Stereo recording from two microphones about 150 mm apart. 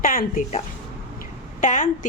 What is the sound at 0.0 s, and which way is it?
Speech, 70° left (ahead or behind).